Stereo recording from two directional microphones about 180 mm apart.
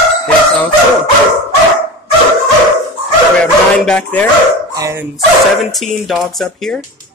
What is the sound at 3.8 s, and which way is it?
Speech, 5° left (ahead or behind).